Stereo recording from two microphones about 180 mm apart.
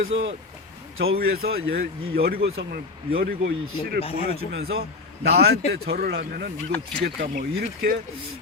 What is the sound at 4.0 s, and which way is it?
Speech, 30° left (ahead or behind).